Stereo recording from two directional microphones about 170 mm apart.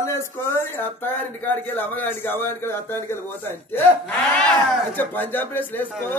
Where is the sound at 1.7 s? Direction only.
10° left (ahead or behind).